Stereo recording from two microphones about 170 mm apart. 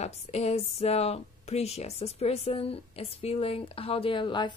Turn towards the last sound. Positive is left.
turn(degrees=30)  # may be behind; listen again after turning